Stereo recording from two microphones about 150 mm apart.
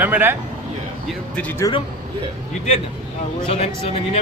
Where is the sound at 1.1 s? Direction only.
10° left (ahead or behind).